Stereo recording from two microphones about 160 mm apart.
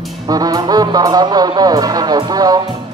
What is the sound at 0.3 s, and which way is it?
Speech, 25° right (ahead or behind).